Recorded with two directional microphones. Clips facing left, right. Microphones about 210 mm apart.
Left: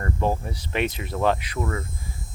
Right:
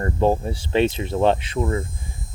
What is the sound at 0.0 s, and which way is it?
Speech, 30° right (ahead or behind).